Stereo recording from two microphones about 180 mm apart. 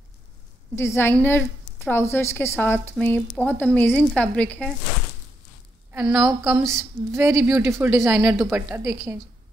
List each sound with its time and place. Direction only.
0.7 s a woman's voice: 15° left (ahead or behind)
5.9 s a woman's voice: 10° right (ahead or behind)